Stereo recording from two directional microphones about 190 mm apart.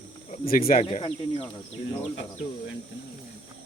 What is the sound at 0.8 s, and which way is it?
Speech, 30° left (ahead or behind).